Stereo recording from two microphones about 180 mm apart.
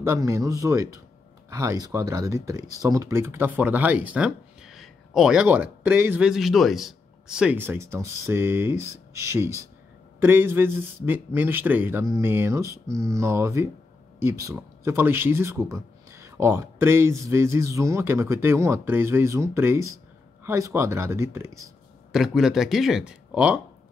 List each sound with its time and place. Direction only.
0.0 s speech: 15° right (ahead or behind)
22.1 s speech: centre (ahead or behind)